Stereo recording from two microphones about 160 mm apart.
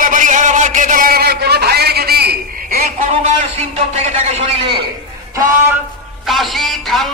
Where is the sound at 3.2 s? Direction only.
40° right (ahead or behind).